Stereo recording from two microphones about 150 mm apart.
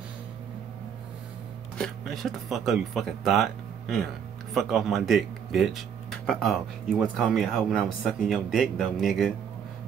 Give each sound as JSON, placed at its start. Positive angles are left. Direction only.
{"t": 1.8, "sound": "speech", "side_deg": 0}